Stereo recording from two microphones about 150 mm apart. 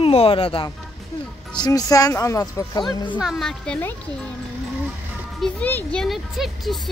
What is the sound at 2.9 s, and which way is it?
Speech, 30° left (ahead or behind).